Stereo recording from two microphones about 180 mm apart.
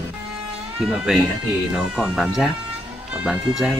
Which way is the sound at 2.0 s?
Centre (ahead or behind).